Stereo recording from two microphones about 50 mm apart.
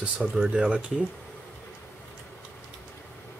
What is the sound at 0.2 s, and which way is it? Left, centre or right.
Speech, centre.